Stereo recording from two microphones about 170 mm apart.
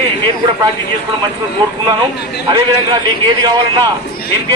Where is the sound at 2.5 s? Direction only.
25° right (ahead or behind).